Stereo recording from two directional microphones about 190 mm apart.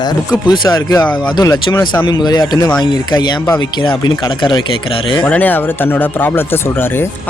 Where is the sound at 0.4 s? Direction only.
25° left (ahead or behind).